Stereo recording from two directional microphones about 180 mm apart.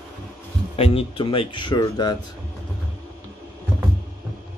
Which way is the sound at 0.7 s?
35° left (ahead or behind).